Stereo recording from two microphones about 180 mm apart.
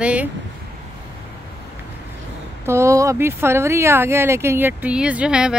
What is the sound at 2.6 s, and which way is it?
Speech, 15° right (ahead or behind).